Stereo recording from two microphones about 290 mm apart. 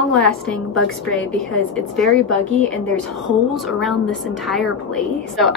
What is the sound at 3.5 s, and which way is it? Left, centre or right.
Speech, centre.